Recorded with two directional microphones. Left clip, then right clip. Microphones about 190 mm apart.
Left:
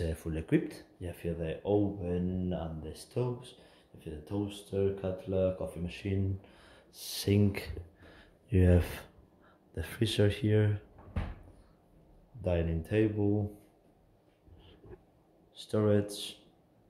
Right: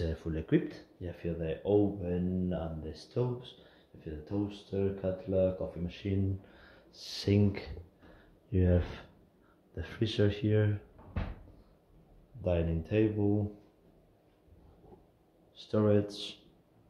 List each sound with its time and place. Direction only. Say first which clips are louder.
0.0 s speech: even; 5° left (ahead or behind)
8.5 s speech: left 2 dB; 25° left (ahead or behind)
12.4 s speech: right 1 dB; 10° left (ahead or behind)
15.5 s speech: right 1 dB; 5° left (ahead or behind)